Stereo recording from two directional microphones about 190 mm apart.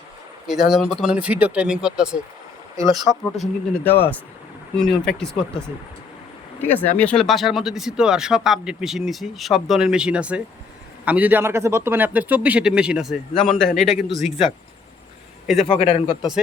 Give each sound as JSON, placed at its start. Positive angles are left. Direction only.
{"t": 0.4, "sound": "speech", "side_deg": 0}
{"t": 2.7, "sound": "speech", "side_deg": -20}
{"t": 3.4, "sound": "speech", "side_deg": 10}
{"t": 15.7, "sound": "speech", "side_deg": 30}